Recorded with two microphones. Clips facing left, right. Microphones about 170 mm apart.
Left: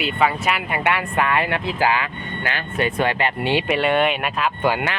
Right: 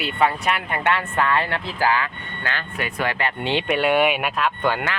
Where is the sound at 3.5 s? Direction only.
Centre (ahead or behind).